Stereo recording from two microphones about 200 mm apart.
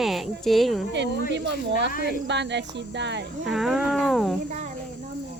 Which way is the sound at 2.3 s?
60° right (ahead or behind).